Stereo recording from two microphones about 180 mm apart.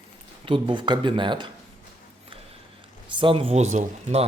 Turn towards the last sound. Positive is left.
turn(degrees=-40)  # may be behind; listen again after turning